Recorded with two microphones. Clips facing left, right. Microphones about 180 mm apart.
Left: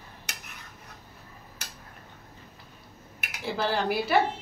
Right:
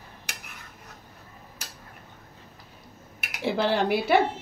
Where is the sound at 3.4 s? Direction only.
65° right (ahead or behind).